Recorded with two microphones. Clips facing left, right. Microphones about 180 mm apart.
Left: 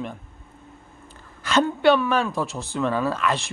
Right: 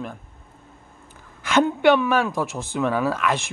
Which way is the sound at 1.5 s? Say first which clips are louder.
Right 1 dB; 15° right (ahead or behind).